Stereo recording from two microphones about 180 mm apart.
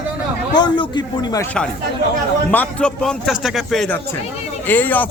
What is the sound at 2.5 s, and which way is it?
A man's voice, 10° left (ahead or behind).